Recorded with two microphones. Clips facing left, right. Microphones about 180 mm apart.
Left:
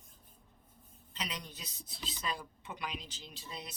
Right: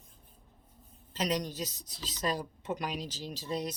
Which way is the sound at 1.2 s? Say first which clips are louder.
Right 12 dB; 40° right (ahead or behind).